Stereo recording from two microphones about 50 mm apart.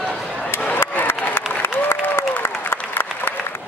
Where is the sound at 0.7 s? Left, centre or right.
Left.